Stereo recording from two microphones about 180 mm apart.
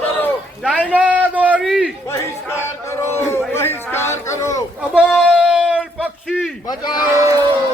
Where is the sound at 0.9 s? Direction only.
10° right (ahead or behind).